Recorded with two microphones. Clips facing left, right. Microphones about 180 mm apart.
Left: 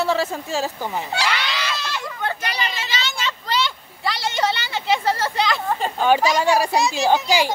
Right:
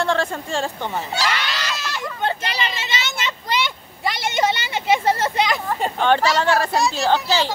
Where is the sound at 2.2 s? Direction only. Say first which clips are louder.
Right 2 dB; 25° right (ahead or behind).